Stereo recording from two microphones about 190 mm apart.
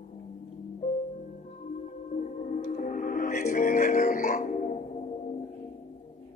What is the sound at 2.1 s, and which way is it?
Music, 40° left (ahead or behind).